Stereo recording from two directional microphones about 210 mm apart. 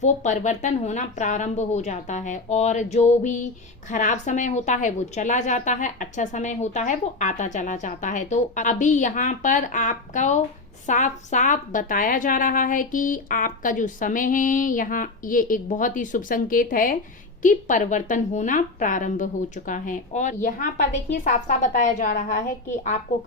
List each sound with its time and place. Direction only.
0.0 s a woman's voice: 35° left (ahead or behind)